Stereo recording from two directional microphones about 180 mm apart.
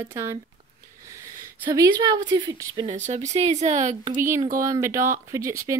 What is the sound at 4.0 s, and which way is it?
Speech, 20° right (ahead or behind).